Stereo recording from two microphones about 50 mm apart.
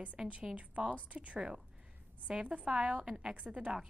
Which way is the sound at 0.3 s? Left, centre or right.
Right.